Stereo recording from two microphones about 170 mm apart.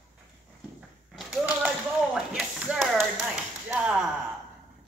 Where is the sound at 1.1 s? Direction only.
Centre (ahead or behind).